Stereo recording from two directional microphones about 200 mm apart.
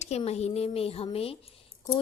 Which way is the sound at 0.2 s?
30° left (ahead or behind).